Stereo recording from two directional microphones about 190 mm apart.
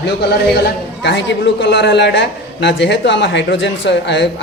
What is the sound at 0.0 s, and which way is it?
A man's voice, 60° left (ahead or behind).